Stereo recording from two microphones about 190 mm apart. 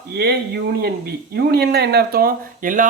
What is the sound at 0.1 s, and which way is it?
Speech, 55° right (ahead or behind).